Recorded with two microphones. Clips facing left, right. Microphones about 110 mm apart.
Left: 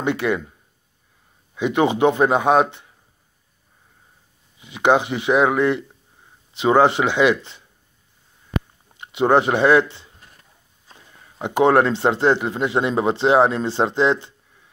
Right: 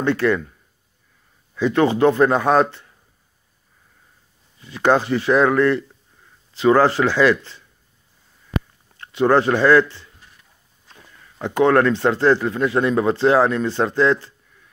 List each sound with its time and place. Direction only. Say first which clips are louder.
0.0 s speech: right 3 dB; 15° left (ahead or behind)
4.6 s speech: even; 15° left (ahead or behind)
8.9 s speech: even; 20° left (ahead or behind)
11.1 s speech: even; 25° left (ahead or behind)